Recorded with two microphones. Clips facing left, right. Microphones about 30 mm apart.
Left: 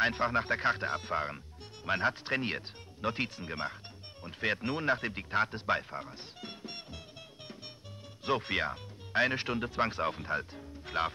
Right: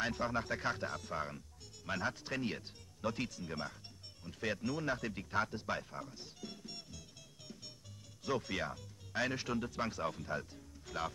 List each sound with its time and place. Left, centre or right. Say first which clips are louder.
0.0 s speech: left 7 dB; left
8.2 s speech: left 6 dB; left